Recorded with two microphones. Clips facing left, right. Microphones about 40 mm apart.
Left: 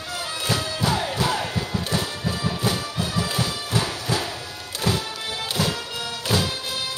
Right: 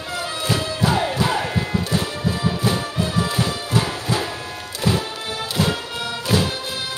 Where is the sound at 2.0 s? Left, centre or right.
Right.